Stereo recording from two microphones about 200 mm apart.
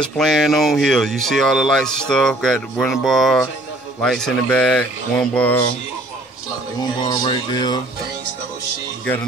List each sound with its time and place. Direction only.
0.0 s speech: centre (ahead or behind)
6.8 s speech: 25° left (ahead or behind)